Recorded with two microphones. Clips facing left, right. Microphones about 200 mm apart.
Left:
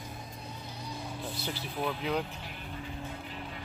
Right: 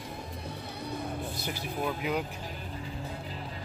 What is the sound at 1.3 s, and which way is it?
Vehicle, 15° right (ahead or behind).